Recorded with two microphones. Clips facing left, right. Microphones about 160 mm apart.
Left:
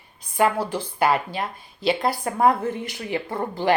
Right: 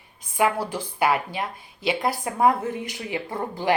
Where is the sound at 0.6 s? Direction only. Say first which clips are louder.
Left 2 dB; 20° left (ahead or behind).